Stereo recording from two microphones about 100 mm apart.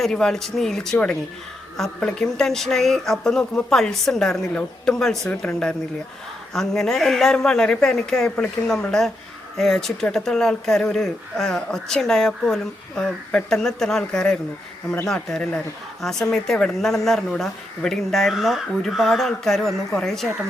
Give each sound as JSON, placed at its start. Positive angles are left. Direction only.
{"t": 0.0, "sound": "speech", "side_deg": 5}